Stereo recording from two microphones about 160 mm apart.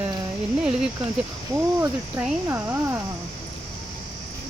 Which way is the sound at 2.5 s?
15° right (ahead or behind).